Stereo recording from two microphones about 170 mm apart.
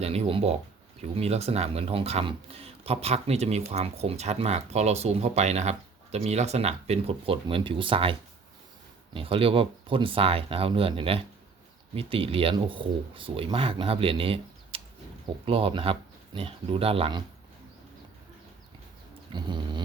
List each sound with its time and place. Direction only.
0.0 s speech: 35° right (ahead or behind)
9.1 s speech: 30° right (ahead or behind)
19.3 s a sound: 25° right (ahead or behind)